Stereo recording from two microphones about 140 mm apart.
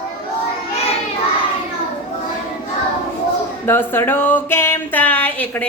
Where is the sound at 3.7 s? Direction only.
15° left (ahead or behind).